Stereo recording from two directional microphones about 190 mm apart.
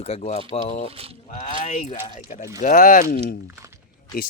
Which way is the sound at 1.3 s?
40° left (ahead or behind).